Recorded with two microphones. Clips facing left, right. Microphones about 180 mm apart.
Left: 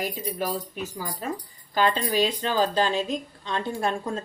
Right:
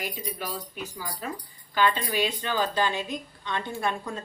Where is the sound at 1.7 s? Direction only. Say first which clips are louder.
Left 2 dB; 40° left (ahead or behind).